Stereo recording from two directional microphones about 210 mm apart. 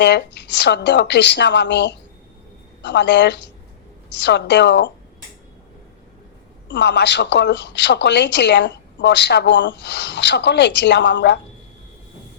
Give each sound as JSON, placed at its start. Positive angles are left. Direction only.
{"t": 0.0, "sound": "speech", "side_deg": 55}
{"t": 6.7, "sound": "speech", "side_deg": 55}